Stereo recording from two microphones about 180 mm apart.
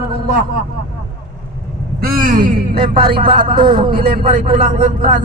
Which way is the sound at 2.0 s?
50° right (ahead or behind).